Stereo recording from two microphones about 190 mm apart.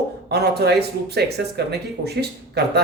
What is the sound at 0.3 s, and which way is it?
Speech, 60° right (ahead or behind).